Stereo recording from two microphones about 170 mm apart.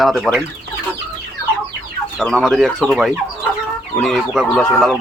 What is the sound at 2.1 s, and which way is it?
Speech, centre (ahead or behind).